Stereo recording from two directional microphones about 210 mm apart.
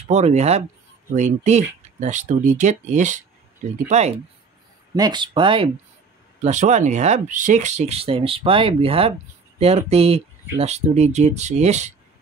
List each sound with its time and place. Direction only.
0.1 s speech: 30° right (ahead or behind)
4.9 s speech: 20° right (ahead or behind)
6.4 s speech: 35° right (ahead or behind)